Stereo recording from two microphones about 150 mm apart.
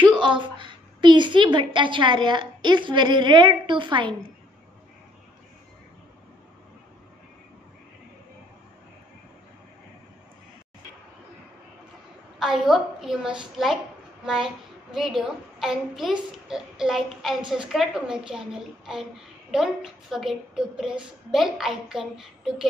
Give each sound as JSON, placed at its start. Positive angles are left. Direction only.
{"t": 0.0, "sound": "a sound", "side_deg": -5}
{"t": 0.3, "sound": "a woman's voice", "side_deg": -35}
{"t": 12.4, "sound": "a child's voice", "side_deg": -5}